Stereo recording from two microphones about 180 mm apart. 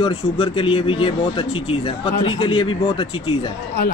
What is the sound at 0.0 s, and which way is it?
Speech, 30° left (ahead or behind).